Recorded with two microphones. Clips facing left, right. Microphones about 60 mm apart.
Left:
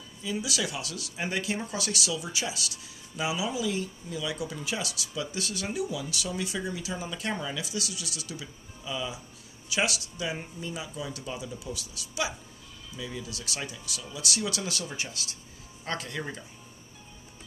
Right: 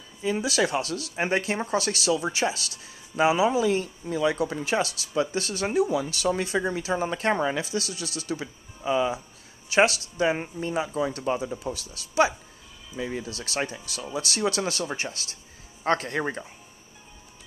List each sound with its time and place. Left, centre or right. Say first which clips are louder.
0.2 s speech: right 7 dB; right